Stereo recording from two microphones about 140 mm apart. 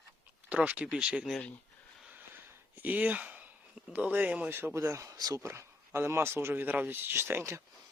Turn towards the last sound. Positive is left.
turn(degrees=-15)  # may be behind; listen again after turning